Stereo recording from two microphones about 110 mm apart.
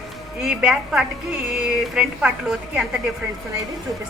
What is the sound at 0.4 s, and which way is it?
A woman's voice, 5° right (ahead or behind).